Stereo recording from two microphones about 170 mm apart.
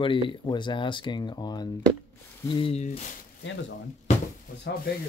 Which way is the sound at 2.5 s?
35° left (ahead or behind).